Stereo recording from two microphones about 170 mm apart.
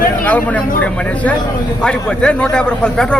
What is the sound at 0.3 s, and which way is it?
A man's voice, 10° left (ahead or behind).